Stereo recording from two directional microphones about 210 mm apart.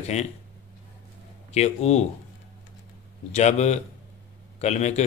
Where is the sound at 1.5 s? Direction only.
30° left (ahead or behind).